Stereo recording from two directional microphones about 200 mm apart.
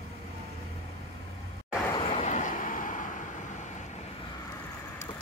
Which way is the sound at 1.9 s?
30° left (ahead or behind).